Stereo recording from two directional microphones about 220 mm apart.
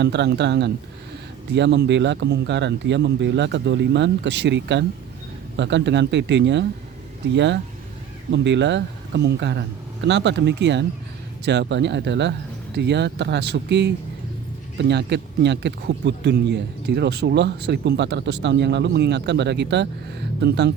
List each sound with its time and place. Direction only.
0.0 s speech: 50° right (ahead or behind)